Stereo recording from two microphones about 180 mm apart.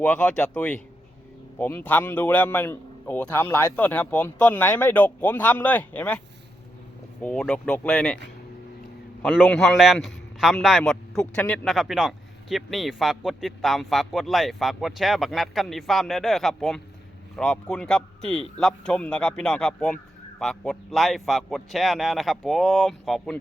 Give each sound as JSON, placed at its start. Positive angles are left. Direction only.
{"t": 0.0, "sound": "a man's voice", "side_deg": 5}
{"t": 9.2, "sound": "a man's voice", "side_deg": 0}